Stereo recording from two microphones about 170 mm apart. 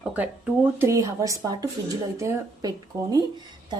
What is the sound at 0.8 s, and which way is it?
A woman's voice, 15° right (ahead or behind).